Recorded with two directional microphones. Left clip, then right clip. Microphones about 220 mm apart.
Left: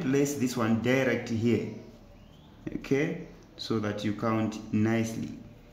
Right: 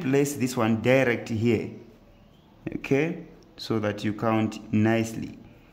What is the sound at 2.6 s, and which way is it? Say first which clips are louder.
Speech: right 4 dB; 50° right (ahead or behind).